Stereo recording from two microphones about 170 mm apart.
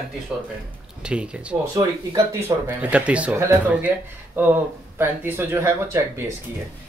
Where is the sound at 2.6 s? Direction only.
5° right (ahead or behind).